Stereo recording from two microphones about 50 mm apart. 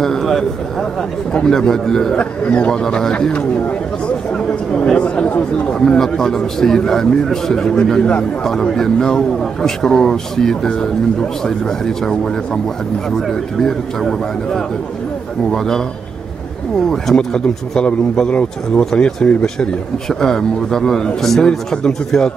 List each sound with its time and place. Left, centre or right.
0.0 s speech: centre
2.1 s a man's voice: left
4.9 s chatter: left
5.7 s speech: centre
13.6 s speech: centre
16.8 s a man's voice: centre
18.9 s speech: centre